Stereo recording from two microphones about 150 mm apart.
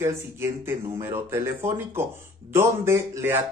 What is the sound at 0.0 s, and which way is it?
Speech, 15° right (ahead or behind).